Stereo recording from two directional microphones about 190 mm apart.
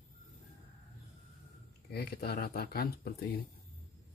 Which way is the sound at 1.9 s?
55° left (ahead or behind).